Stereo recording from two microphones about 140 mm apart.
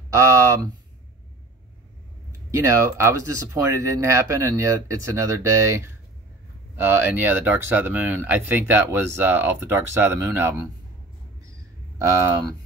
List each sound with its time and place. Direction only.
0.1 s speech: 20° right (ahead or behind)
2.6 s speech: 20° right (ahead or behind)
12.0 s speech: 20° right (ahead or behind)